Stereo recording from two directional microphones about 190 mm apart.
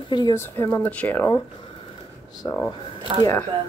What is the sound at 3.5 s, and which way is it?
Speech, 25° right (ahead or behind).